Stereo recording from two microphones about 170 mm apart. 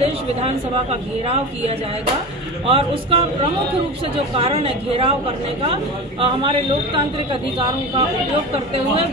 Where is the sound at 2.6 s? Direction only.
30° right (ahead or behind).